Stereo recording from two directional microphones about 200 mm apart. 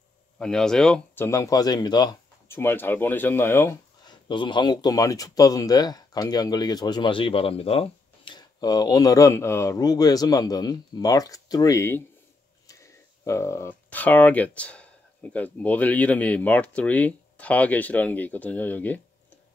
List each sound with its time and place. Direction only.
0.4 s speech: 5° left (ahead or behind)